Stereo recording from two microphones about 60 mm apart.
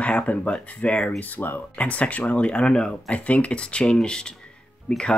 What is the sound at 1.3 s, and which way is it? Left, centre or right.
Speech, left.